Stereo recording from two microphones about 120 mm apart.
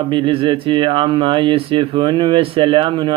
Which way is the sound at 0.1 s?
45° right (ahead or behind).